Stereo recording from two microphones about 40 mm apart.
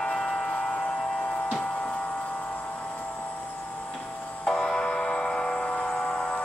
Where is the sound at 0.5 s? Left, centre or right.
Left.